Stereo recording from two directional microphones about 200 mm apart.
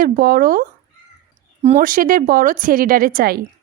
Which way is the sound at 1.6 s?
30° right (ahead or behind).